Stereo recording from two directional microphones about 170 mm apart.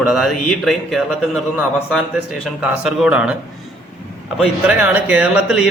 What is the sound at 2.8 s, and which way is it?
Speech, 5° right (ahead or behind).